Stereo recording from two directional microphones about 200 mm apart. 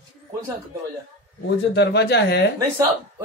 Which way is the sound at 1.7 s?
55° left (ahead or behind).